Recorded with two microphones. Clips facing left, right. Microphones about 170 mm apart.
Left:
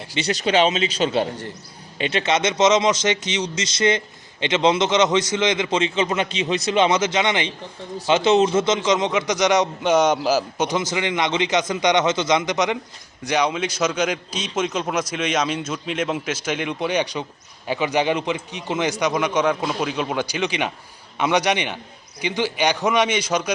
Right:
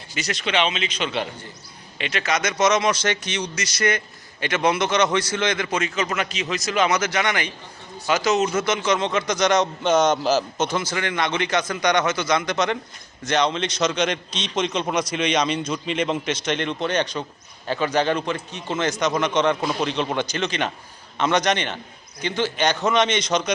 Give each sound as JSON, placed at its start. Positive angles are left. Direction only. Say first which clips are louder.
{"t": 0.2, "sound": "a man's voice", "louder": "left 5 dB", "side_deg": 35}